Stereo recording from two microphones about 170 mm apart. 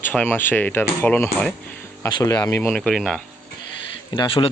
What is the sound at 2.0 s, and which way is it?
Speech, 25° left (ahead or behind).